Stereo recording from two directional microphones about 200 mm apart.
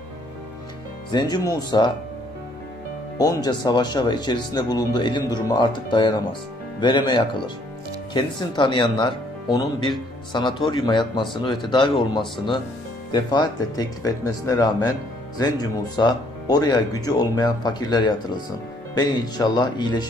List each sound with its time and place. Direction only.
1.1 s speech: 20° left (ahead or behind)
3.2 s speech: 20° left (ahead or behind)